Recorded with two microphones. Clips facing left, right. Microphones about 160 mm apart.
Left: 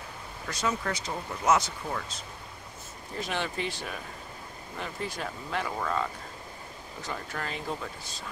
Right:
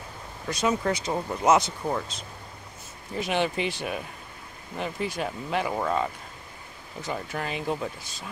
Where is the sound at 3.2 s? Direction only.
15° right (ahead or behind).